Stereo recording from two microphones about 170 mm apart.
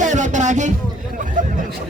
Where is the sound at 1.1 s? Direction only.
50° right (ahead or behind).